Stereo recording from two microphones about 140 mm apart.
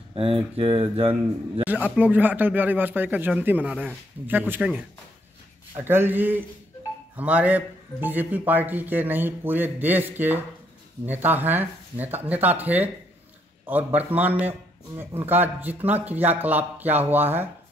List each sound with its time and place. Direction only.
0.1 s speech: 40° right (ahead or behind)
1.6 s a man's voice: 10° right (ahead or behind)